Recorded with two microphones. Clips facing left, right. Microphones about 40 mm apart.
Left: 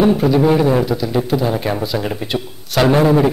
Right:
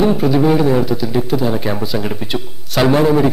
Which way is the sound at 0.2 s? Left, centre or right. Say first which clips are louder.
Even; centre.